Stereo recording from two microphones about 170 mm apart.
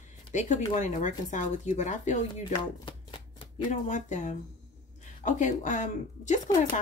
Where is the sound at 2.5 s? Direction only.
30° left (ahead or behind).